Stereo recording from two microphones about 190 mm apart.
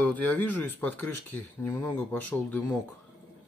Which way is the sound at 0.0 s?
10° left (ahead or behind).